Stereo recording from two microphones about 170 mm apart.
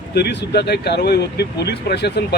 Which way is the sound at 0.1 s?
85° left.